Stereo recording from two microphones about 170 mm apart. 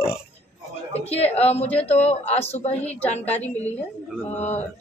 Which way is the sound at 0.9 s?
35° left (ahead or behind).